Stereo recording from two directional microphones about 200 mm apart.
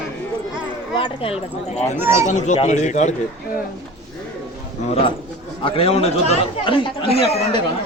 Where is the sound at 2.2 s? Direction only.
35° left (ahead or behind).